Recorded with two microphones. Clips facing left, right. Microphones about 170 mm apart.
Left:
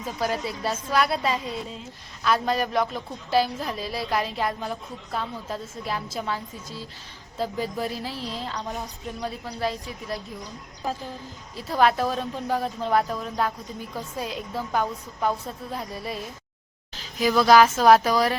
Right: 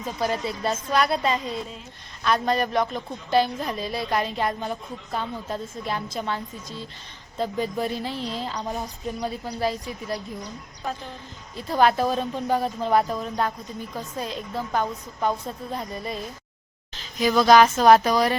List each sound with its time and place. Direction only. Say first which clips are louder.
0.0 s a woman's voice: right 1 dB; 5° left (ahead or behind)